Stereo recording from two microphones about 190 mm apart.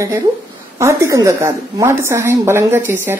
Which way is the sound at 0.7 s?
15° right (ahead or behind).